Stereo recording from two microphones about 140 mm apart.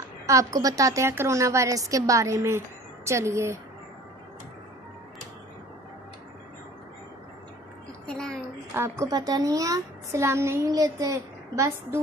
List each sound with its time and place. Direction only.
0.3 s a woman's voice: 25° right (ahead or behind)
8.1 s a sound: 5° left (ahead or behind)
8.7 s a woman's voice: 20° right (ahead or behind)